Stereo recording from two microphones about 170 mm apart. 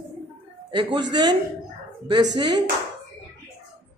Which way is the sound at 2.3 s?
25° right (ahead or behind).